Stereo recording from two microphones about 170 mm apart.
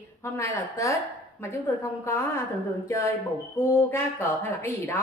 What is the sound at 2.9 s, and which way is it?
A woman's voice, 15° left (ahead or behind).